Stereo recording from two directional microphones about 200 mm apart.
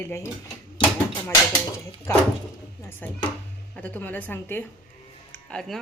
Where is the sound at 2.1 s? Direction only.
15° left (ahead or behind).